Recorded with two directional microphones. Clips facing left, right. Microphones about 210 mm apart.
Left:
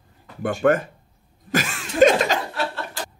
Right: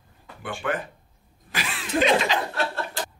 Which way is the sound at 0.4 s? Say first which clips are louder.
Left 10 dB; 45° left (ahead or behind).